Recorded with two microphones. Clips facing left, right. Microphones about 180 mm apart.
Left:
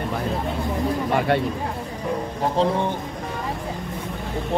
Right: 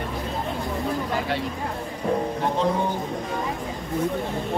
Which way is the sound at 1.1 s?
60° left (ahead or behind).